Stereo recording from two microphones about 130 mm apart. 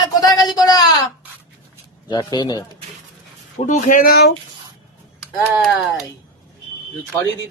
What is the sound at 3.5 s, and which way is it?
Speech, 75° left (ahead or behind).